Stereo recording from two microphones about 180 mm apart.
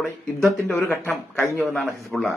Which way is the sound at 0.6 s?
15° left (ahead or behind).